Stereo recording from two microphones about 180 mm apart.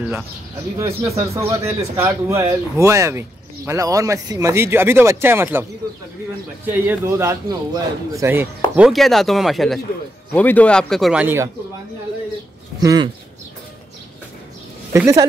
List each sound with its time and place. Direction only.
0.7 s speech: 15° right (ahead or behind)
8.7 s speech: centre (ahead or behind)
12.8 s speech: 20° right (ahead or behind)
14.9 s speech: 15° right (ahead or behind)